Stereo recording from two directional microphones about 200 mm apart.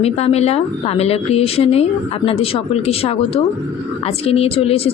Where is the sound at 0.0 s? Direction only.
30° left (ahead or behind).